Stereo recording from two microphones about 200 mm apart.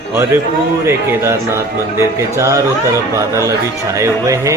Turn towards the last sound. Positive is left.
turn(degrees=-15)  # may be behind; listen again after turning